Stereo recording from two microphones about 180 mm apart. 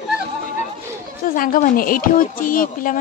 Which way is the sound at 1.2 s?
50° left (ahead or behind).